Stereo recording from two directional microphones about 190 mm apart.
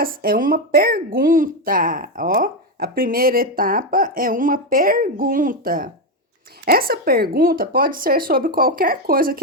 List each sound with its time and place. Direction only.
0.0 s speech: 50° right (ahead or behind)